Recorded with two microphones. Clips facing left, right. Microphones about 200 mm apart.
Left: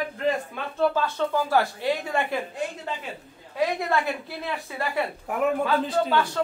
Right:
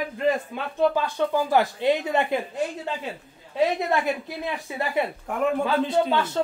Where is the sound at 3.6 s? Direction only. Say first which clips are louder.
Right 2 dB; 20° right (ahead or behind).